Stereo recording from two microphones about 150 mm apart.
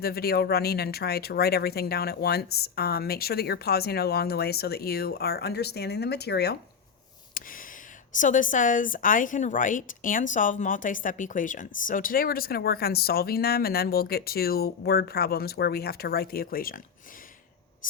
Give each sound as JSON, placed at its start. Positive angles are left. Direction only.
{"t": 0.0, "sound": "speech", "side_deg": 90}
{"t": 7.3, "sound": "a sound", "side_deg": 65}
{"t": 8.2, "sound": "a woman's voice", "side_deg": 60}